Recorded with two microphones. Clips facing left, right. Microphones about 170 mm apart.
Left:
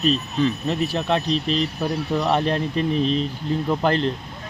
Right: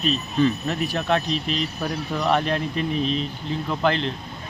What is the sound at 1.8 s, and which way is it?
Speech, 5° left (ahead or behind).